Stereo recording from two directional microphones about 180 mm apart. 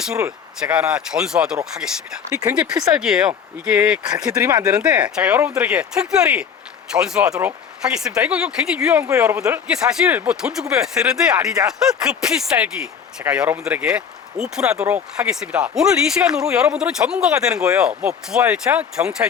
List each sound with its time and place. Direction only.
0.6 s speech: 5° right (ahead or behind)
2.3 s speech: 20° right (ahead or behind)
2.6 s speech: 5° right (ahead or behind)
4.4 s speech: 20° right (ahead or behind)
4.7 s speech: 5° right (ahead or behind)